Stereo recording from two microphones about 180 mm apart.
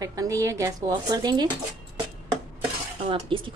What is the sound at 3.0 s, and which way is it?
Speech, 30° right (ahead or behind).